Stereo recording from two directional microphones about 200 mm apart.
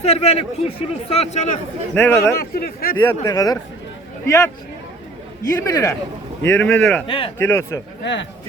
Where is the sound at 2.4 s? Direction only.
50° left (ahead or behind).